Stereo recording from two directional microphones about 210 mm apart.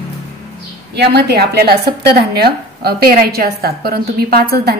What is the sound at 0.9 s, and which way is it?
A woman's voice, 50° right (ahead or behind).